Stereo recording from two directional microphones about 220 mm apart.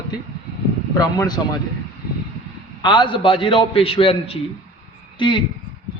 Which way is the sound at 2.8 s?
20° left (ahead or behind).